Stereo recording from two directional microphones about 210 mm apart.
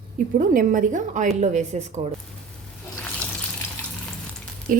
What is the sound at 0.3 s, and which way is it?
A woman's voice, 40° right (ahead or behind).